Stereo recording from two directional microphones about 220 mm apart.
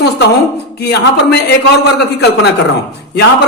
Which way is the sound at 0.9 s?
50° left (ahead or behind).